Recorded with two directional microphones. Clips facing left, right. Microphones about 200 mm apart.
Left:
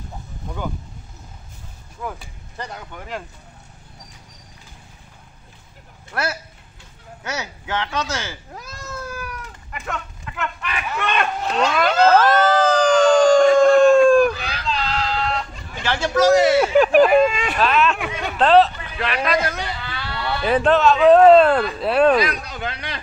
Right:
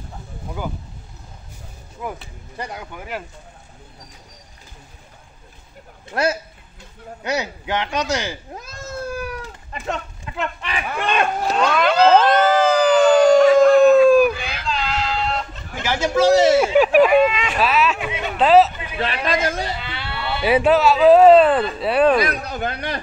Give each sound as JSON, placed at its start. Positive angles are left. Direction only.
{"t": 2.0, "sound": "speech", "side_deg": -10}
{"t": 6.1, "sound": "speech", "side_deg": -20}
{"t": 12.0, "sound": "a sound", "side_deg": -15}
{"t": 15.8, "sound": "speech", "side_deg": -15}
{"t": 17.1, "sound": "speech", "side_deg": 50}
{"t": 17.6, "sound": "speech", "side_deg": -5}
{"t": 18.9, "sound": "a man's voice", "side_deg": -25}
{"t": 20.4, "sound": "speech", "side_deg": -10}
{"t": 22.3, "sound": "speech", "side_deg": -55}